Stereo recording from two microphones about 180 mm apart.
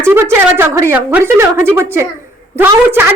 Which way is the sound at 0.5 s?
15° right (ahead or behind).